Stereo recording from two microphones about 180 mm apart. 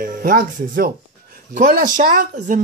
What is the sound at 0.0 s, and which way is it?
Speech, 55° right (ahead or behind).